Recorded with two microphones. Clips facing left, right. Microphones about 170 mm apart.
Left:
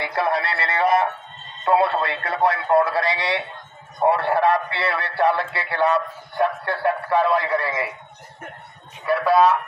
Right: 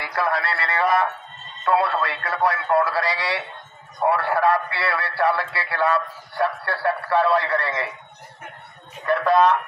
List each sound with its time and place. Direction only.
0.0 s a man's voice: 25° left (ahead or behind)
9.0 s speech: 5° left (ahead or behind)